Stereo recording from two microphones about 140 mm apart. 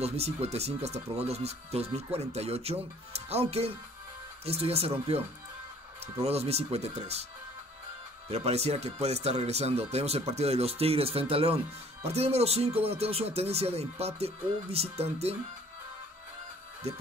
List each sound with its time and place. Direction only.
0.0 s speech: 45° right (ahead or behind)
6.2 s speech: 45° right (ahead or behind)
8.3 s speech: 50° right (ahead or behind)
16.8 s speech: 50° right (ahead or behind)